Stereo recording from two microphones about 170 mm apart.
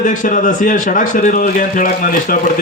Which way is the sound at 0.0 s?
50° left (ahead or behind).